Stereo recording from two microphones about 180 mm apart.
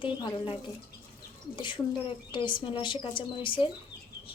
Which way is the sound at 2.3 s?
25° left (ahead or behind).